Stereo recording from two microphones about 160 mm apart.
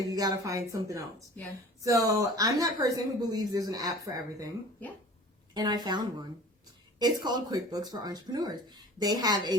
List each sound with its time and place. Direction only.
0.1 s speech: 25° right (ahead or behind)
5.5 s speech: 25° right (ahead or behind)